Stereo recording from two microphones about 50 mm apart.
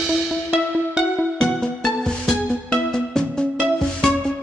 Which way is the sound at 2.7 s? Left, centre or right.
Centre.